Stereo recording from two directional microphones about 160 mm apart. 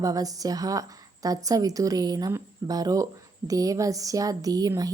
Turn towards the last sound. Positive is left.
turn(degrees=-25)  # may be behind; listen again after turning